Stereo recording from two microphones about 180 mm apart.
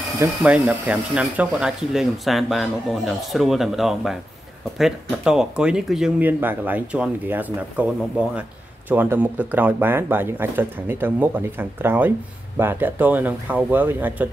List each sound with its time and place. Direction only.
0.4 s speech: 5° right (ahead or behind)